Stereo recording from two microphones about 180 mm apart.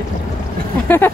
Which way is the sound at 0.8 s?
10° left (ahead or behind).